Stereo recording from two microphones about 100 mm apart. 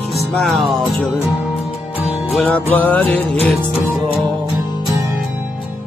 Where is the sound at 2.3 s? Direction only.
15° left (ahead or behind).